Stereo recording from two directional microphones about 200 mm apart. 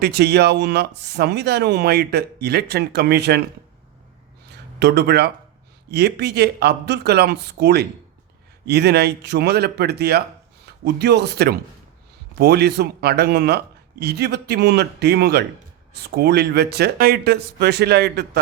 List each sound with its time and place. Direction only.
0.0 s speech: 55° right (ahead or behind)
4.8 s speech: 60° right (ahead or behind)